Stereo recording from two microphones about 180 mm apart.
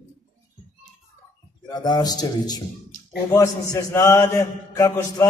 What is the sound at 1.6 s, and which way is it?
A man's voice, 20° left (ahead or behind).